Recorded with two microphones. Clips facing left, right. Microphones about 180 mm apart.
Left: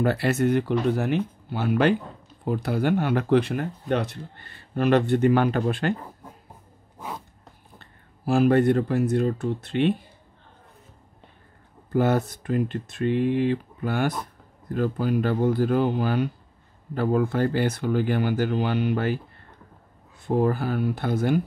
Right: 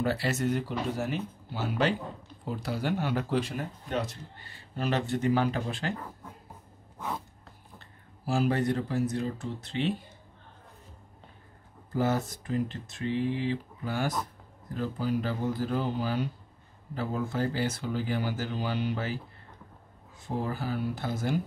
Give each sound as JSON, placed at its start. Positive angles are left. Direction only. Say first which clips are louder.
{"t": 0.0, "sound": "speech", "louder": "left 6 dB", "side_deg": 60}
{"t": 7.8, "sound": "speech", "louder": "left 7 dB", "side_deg": 60}
{"t": 11.9, "sound": "speech", "louder": "left 6 dB", "side_deg": 65}
{"t": 20.2, "sound": "speech", "louder": "left 9 dB", "side_deg": 60}